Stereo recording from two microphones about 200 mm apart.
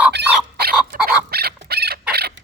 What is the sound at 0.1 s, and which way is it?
Chicken, 55° right (ahead or behind).